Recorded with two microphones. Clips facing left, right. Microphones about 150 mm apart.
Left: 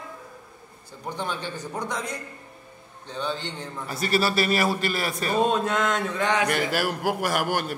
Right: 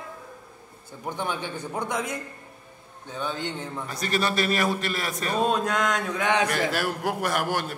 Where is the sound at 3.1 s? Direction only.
10° right (ahead or behind).